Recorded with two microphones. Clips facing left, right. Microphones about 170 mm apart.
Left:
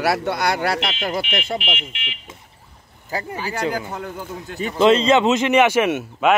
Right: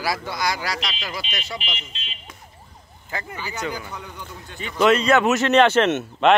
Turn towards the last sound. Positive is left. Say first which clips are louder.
# even
turn(degrees=10)  # may be behind; listen again after turning